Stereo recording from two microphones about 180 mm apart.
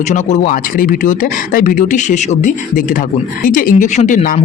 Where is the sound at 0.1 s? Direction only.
40° left (ahead or behind).